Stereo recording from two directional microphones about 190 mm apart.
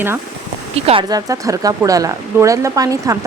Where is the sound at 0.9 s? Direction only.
25° right (ahead or behind).